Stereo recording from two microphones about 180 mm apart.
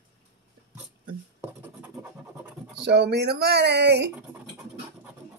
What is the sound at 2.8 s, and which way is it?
Speech, 70° right (ahead or behind).